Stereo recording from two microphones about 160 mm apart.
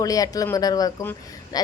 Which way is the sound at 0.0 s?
20° left (ahead or behind).